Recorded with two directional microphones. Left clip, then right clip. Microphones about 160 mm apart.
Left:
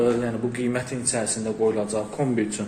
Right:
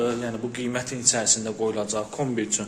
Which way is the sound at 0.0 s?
15° right (ahead or behind).